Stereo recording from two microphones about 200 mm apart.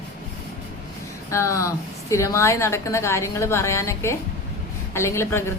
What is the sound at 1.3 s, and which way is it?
A woman's voice, 15° left (ahead or behind).